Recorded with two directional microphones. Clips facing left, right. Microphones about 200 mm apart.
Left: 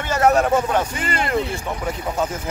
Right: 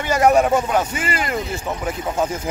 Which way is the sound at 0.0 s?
10° right (ahead or behind).